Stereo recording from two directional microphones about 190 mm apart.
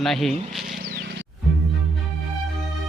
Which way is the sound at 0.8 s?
55° right (ahead or behind).